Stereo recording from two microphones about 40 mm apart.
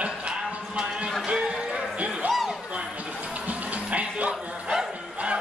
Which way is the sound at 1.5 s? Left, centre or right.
Right.